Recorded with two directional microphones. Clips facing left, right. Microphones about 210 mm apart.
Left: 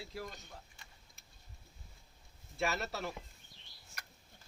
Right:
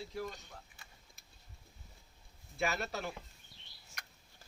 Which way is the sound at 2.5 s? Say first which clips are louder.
Even; centre (ahead or behind).